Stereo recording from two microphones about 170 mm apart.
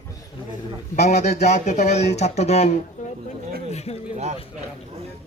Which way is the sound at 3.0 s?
50° left (ahead or behind).